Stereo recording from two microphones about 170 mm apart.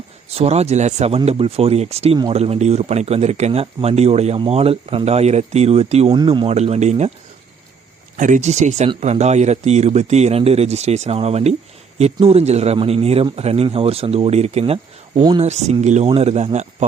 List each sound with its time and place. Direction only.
0.3 s speech: 40° right (ahead or behind)
6.1 s speech: 25° right (ahead or behind)
8.1 s speech: 50° right (ahead or behind)